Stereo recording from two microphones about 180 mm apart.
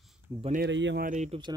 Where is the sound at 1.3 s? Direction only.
25° right (ahead or behind).